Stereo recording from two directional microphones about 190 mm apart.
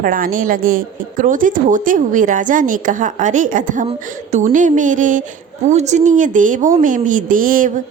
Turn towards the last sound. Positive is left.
turn(degrees=-45)  # may be behind; listen again after turning